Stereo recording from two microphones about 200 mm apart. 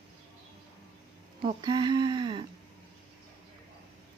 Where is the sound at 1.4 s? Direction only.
20° right (ahead or behind).